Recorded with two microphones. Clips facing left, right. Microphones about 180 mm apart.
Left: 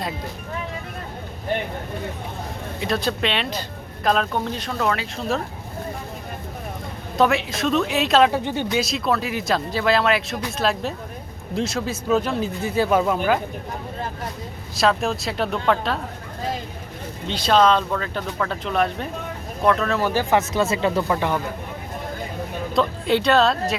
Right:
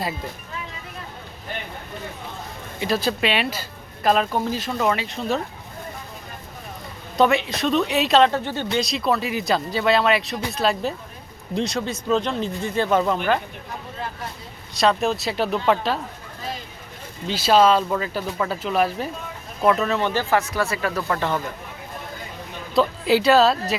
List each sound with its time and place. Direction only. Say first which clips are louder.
2.8 s speech: right 1 dB; centre (ahead or behind)
7.2 s speech: right 1 dB; centre (ahead or behind)
8.3 s speech: left 1 dB; 15° left (ahead or behind)
8.8 s speech: even; centre (ahead or behind)
14.8 s speech: right 1 dB; centre (ahead or behind)
17.2 s speech: right 1 dB; 5° right (ahead or behind)
20.0 s speech: left 1 dB; 5° left (ahead or behind)
20.3 s speech: left 2 dB; 20° left (ahead or behind)
22.7 s speech: right 2 dB; 5° right (ahead or behind)